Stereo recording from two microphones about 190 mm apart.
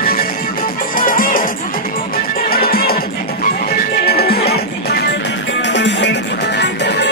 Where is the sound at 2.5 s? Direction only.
50° left (ahead or behind).